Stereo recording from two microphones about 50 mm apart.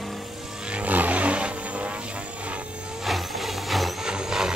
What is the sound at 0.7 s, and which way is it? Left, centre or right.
Vehicle, right.